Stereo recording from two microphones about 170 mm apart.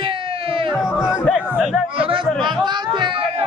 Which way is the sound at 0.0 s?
30° right (ahead or behind).